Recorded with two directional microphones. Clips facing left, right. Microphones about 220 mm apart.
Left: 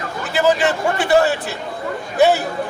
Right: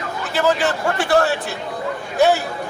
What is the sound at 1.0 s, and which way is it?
A man's voice, centre (ahead or behind).